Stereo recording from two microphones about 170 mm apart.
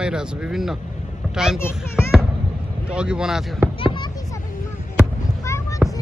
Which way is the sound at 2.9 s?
5° right (ahead or behind).